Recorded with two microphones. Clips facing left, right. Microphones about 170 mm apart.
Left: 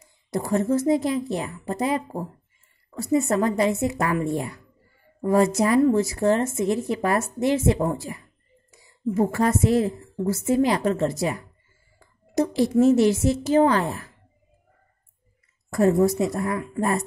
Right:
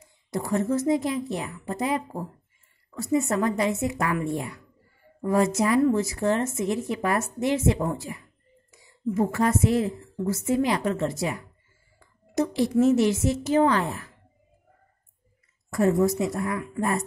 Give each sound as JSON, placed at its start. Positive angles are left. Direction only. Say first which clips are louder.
{"t": 0.3, "sound": "a woman's voice", "louder": "left 3 dB", "side_deg": 35}
{"t": 15.7, "sound": "a woman's voice", "louder": "left 3 dB", "side_deg": 35}